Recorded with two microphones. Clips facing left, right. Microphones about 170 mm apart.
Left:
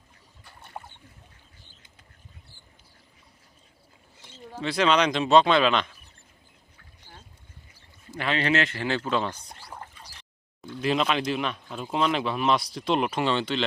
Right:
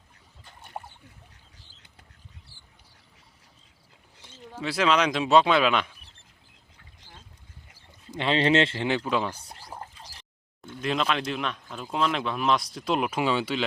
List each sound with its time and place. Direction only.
4.6 s speech: 5° right (ahead or behind)
8.1 s speech: 25° right (ahead or behind)
8.9 s speech: 15° right (ahead or behind)
9.8 s a sound: 35° right (ahead or behind)
10.8 s speech: centre (ahead or behind)